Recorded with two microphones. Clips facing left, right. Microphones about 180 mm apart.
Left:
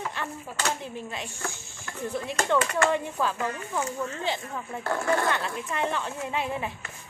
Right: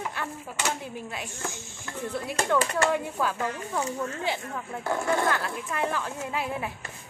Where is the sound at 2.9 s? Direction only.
5° right (ahead or behind).